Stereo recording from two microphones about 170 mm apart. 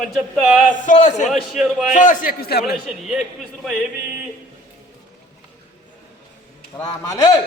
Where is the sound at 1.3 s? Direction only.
Centre (ahead or behind).